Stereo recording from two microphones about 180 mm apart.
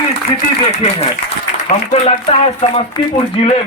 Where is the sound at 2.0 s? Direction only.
35° left (ahead or behind).